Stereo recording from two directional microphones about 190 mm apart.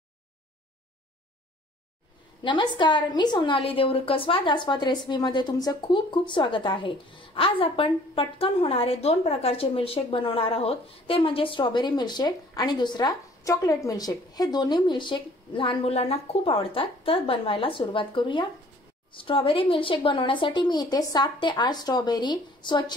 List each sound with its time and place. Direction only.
2.4 s a woman's voice: 25° left (ahead or behind)